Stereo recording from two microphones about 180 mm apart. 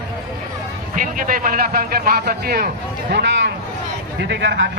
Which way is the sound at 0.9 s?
45° right (ahead or behind).